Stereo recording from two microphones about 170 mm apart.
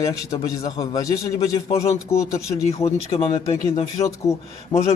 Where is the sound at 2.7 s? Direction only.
35° left (ahead or behind).